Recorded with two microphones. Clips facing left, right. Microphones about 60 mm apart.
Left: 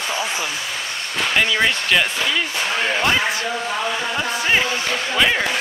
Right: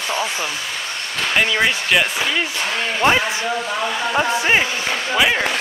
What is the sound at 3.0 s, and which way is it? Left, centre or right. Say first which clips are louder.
Speech: right 2 dB; right.